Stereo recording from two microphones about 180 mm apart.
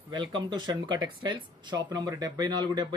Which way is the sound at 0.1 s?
25° right (ahead or behind).